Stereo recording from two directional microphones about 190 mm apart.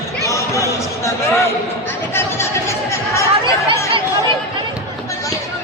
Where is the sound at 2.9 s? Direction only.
15° left (ahead or behind).